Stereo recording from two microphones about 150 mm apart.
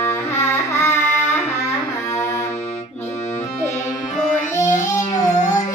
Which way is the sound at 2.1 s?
15° left (ahead or behind).